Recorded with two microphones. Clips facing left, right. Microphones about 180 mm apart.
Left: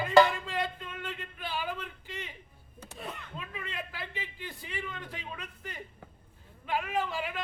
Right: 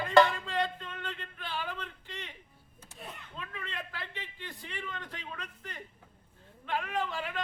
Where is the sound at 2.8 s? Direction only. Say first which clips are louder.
Left 5 dB; 75° left (ahead or behind).